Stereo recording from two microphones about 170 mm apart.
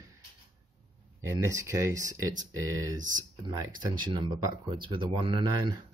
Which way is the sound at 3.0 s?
50° right (ahead or behind).